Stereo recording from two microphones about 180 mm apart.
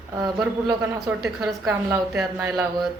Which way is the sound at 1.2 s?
Centre (ahead or behind).